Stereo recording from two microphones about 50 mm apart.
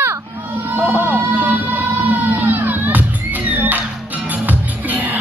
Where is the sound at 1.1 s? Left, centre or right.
Right.